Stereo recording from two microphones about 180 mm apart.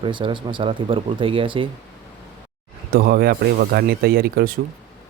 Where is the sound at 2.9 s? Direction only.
55° right (ahead or behind).